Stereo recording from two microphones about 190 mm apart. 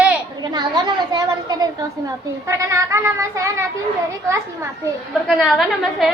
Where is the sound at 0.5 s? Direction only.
20° right (ahead or behind).